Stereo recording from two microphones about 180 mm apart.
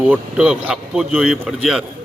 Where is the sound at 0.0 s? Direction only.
5° right (ahead or behind).